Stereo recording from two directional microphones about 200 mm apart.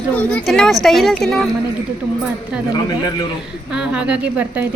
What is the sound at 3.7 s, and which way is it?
Speech, 5° right (ahead or behind).